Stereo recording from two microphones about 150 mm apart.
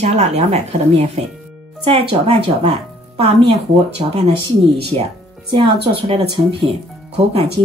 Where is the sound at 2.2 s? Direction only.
40° right (ahead or behind).